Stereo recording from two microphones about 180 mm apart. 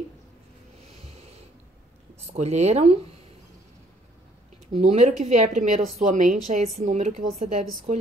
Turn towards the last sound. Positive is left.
turn(degrees=-40)  # may be behind; listen again after turning